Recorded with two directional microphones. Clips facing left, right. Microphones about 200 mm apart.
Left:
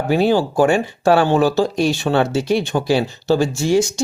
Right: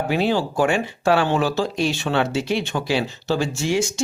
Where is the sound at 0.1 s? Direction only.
40° left (ahead or behind).